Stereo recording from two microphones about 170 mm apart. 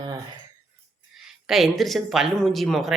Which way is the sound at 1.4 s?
Centre (ahead or behind).